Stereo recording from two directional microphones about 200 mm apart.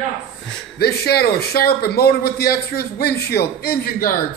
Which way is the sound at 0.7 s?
55° left (ahead or behind).